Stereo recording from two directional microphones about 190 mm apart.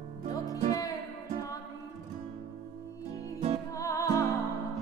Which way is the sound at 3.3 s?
40° right (ahead or behind).